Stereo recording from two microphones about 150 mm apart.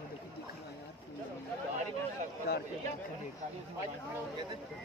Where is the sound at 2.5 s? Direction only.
90° left.